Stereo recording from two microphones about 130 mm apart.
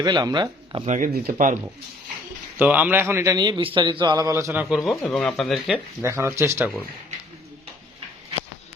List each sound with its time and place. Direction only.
0.0 s a man's voice: 30° right (ahead or behind)
0.9 s speech: 90° right
2.6 s a man's voice: 15° right (ahead or behind)
3.3 s a man's voice: 30° right (ahead or behind)
4.7 s speech: centre (ahead or behind)
6.0 s speech: 20° right (ahead or behind)